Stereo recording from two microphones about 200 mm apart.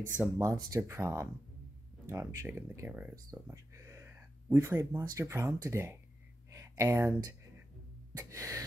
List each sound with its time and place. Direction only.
0.2 s speech: 15° right (ahead or behind)
6.5 s a sound: 15° right (ahead or behind)
8.2 s speech: 15° right (ahead or behind)